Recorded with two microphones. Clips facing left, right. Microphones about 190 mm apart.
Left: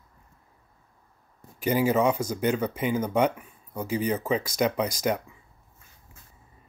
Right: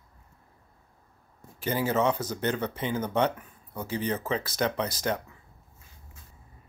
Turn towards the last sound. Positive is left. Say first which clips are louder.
# left 3 dB
turn(degrees=10)  # may be behind; listen again after turning